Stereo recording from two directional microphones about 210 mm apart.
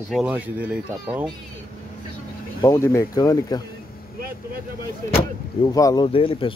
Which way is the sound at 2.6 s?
15° left (ahead or behind).